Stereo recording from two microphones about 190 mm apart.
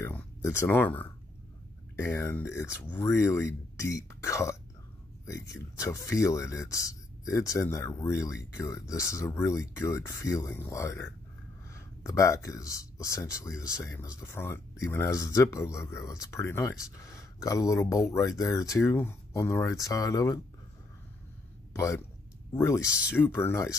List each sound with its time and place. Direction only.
0.0 s speech: 15° left (ahead or behind)
21.7 s speech: 15° left (ahead or behind)
22.8 s speech: 5° right (ahead or behind)
23.1 s speech: 10° left (ahead or behind)